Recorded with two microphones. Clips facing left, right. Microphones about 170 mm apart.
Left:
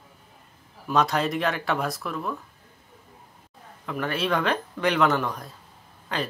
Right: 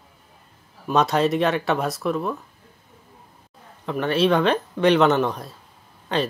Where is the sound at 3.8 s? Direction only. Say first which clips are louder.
Right 7 dB; 25° right (ahead or behind).